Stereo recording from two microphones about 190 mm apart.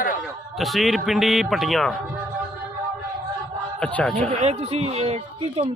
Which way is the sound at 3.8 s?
5° left (ahead or behind).